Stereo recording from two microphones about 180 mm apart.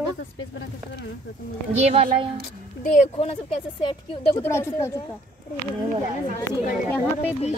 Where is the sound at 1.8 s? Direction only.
35° right (ahead or behind).